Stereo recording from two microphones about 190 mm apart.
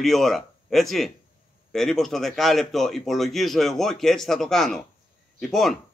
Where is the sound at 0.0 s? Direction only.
Centre (ahead or behind).